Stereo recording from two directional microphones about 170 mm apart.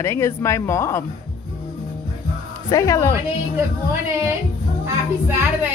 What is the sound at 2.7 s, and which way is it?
Speech, 20° left (ahead or behind).